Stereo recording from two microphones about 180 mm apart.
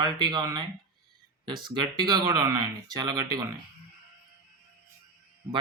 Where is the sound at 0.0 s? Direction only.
25° right (ahead or behind).